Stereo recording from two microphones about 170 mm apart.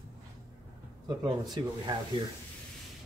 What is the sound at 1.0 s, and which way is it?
Speech, 25° right (ahead or behind).